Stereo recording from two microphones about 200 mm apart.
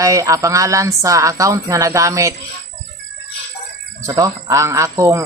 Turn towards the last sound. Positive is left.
turn(degrees=-15)  # may be behind; listen again after turning